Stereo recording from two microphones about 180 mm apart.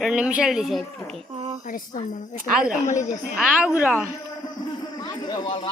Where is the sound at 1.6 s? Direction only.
50° left (ahead or behind).